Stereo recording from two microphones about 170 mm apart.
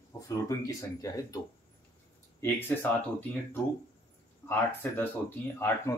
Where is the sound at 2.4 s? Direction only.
10° left (ahead or behind).